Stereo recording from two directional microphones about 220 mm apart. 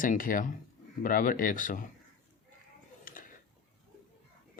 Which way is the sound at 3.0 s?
40° left (ahead or behind).